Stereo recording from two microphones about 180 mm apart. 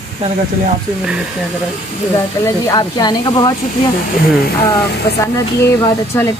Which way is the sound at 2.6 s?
20° left (ahead or behind).